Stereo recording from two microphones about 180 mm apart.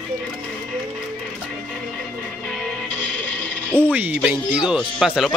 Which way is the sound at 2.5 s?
5° left (ahead or behind).